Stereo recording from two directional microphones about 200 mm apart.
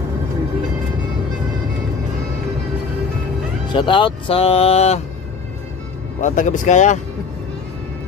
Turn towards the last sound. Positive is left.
turn(degrees=35)  # may be behind; listen again after turning